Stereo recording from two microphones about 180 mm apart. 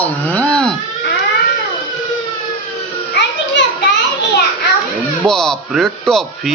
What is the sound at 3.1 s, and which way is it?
Children playing, 70° left (ahead or behind).